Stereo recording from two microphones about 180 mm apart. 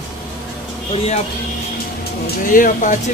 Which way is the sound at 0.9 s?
35° left (ahead or behind).